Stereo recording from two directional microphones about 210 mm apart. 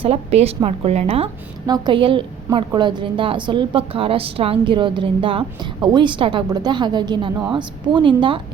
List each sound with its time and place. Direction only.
0.0 s a woman's voice: 30° right (ahead or behind)